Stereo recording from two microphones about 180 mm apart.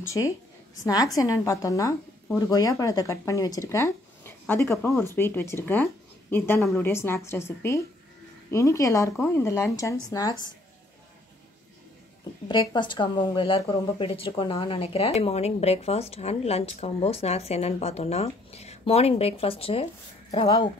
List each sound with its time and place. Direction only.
0.0 s a woman's voice: 15° left (ahead or behind)
12.4 s speech: 25° left (ahead or behind)